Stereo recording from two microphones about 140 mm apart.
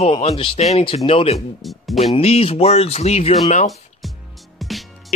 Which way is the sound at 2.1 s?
45° left (ahead or behind).